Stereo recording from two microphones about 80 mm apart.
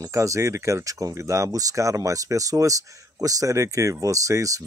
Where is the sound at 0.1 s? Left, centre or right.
Right.